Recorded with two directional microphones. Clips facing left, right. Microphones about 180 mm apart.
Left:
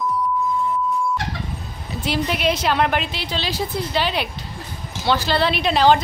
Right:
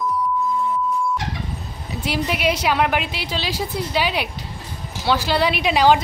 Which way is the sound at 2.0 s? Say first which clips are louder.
Even; 10° right (ahead or behind).